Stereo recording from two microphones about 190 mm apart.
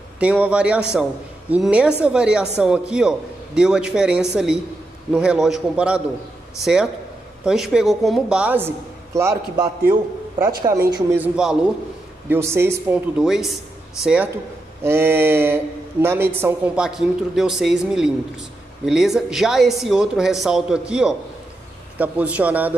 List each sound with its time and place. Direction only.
0.2 s speech: 5° right (ahead or behind)
11.1 s speech: 5° right (ahead or behind)
13.2 s speech: centre (ahead or behind)